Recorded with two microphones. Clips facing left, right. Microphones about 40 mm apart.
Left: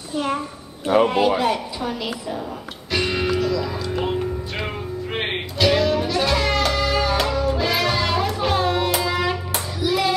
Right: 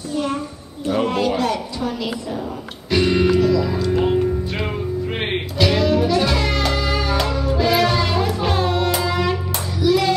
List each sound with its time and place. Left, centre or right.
1.0 s a woman's voice: centre
2.9 s music: centre